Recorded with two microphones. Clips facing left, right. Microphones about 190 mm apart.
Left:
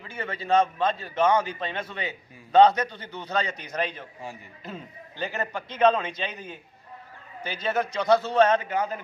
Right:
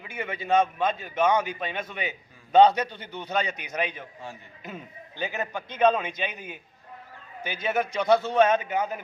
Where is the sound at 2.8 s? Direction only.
25° right (ahead or behind).